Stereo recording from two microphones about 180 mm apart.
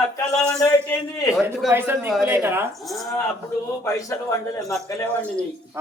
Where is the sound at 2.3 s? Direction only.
15° right (ahead or behind).